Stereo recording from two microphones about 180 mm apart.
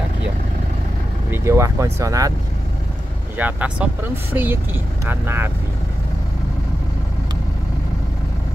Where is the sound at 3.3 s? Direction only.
10° right (ahead or behind).